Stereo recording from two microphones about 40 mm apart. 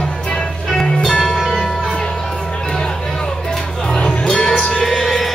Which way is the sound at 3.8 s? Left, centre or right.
Left.